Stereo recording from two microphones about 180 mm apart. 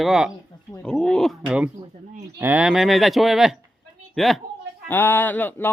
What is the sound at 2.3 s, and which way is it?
A woman's voice, 10° right (ahead or behind).